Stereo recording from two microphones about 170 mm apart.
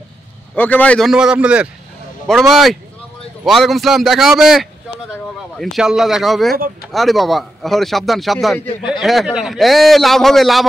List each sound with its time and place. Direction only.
0.6 s a man's voice: 10° left (ahead or behind)
8.6 s speech: 30° left (ahead or behind)
9.0 s a man's voice: centre (ahead or behind)